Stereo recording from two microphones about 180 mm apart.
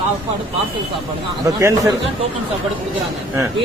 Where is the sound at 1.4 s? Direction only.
20° right (ahead or behind).